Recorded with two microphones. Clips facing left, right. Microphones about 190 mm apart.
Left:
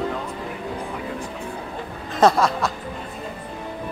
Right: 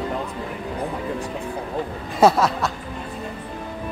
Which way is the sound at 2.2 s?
5° right (ahead or behind).